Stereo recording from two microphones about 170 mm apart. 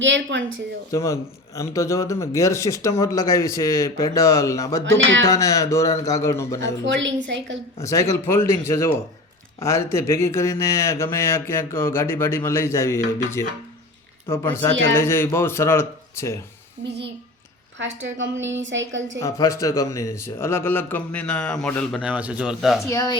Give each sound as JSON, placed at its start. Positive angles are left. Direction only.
{"t": 0.0, "sound": "a woman's voice", "side_deg": -90}
{"t": 0.9, "sound": "a man's voice", "side_deg": 20}
{"t": 6.6, "sound": "a woman's voice", "side_deg": -90}
{"t": 7.8, "sound": "speech", "side_deg": 20}
{"t": 17.7, "sound": "a woman's voice", "side_deg": -90}
{"t": 19.2, "sound": "speech", "side_deg": 20}
{"t": 22.0, "sound": "speech", "side_deg": -5}
{"t": 22.9, "sound": "a man's voice", "side_deg": 20}